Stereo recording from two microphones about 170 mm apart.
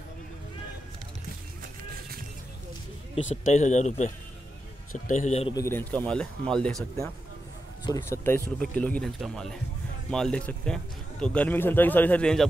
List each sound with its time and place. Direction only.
3.4 s speech: 45° left (ahead or behind)
5.5 s speech: 15° left (ahead or behind)
7.8 s speech: 20° left (ahead or behind)